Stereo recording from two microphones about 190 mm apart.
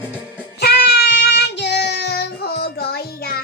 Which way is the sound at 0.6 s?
60° left (ahead or behind).